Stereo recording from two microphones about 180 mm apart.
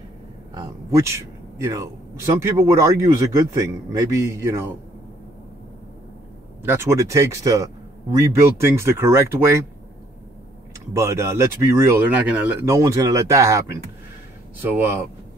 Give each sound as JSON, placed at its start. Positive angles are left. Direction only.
{"t": 0.6, "sound": "speech", "side_deg": -15}
{"t": 6.6, "sound": "speech", "side_deg": -15}
{"t": 10.9, "sound": "speech", "side_deg": -15}